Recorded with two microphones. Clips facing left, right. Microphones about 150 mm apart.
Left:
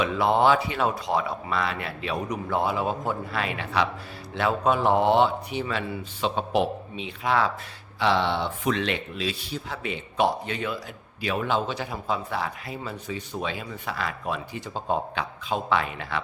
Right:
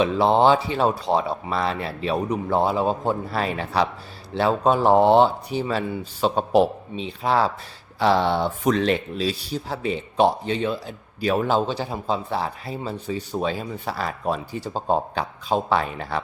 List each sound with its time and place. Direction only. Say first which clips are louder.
0.0 s speech: right 4 dB; 30° right (ahead or behind)